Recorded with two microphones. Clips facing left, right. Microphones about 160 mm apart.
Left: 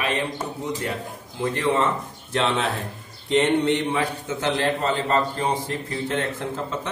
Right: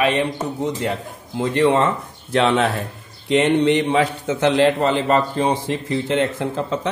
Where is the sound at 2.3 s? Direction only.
70° right (ahead or behind).